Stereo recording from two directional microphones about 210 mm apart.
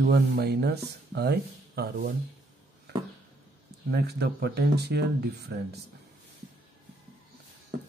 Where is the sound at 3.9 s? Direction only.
50° right (ahead or behind).